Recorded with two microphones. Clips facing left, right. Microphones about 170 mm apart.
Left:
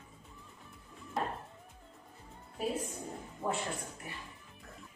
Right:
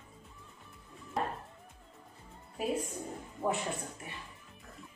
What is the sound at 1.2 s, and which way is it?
Music, centre (ahead or behind).